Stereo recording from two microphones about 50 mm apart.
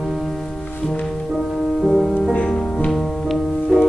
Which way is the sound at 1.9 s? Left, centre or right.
Centre.